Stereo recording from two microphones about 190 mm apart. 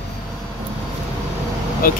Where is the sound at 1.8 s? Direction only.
50° left (ahead or behind).